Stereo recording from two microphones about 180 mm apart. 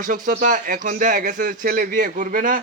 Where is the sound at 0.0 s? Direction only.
45° right (ahead or behind).